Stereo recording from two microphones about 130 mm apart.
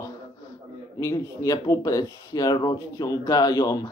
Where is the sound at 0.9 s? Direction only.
25° left (ahead or behind).